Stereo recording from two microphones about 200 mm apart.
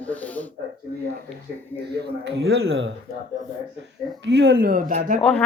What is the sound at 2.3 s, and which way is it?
Speech, 55° right (ahead or behind).